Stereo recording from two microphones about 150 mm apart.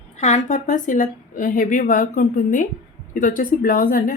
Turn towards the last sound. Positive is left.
turn(degrees=75)  # may be behind; listen again after turning